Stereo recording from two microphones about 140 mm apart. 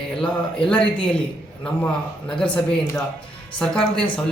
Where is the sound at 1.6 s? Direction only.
10° left (ahead or behind).